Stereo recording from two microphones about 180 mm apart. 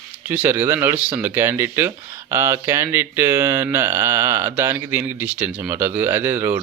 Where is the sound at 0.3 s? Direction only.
10° right (ahead or behind).